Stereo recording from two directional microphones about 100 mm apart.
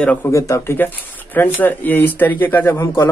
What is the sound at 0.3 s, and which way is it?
Speech, 30° left (ahead or behind).